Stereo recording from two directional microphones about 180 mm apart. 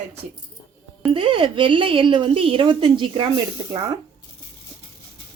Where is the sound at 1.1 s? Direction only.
30° right (ahead or behind).